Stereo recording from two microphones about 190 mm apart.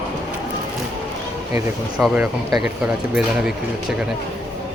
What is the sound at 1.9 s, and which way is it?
Speech, 5° right (ahead or behind).